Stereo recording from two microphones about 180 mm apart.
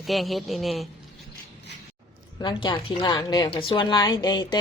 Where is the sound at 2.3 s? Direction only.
25° left (ahead or behind).